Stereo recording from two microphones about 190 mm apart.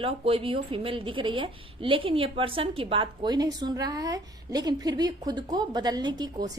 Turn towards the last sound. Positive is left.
turn(degrees=-20)  # may be behind; listen again after turning